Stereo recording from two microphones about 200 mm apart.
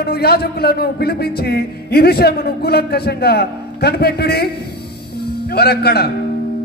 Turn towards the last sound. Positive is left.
turn(degrees=50)  # may be behind; listen again after turning